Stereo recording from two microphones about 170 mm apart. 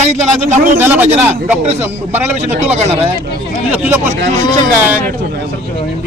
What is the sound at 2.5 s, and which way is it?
Speech, 40° right (ahead or behind).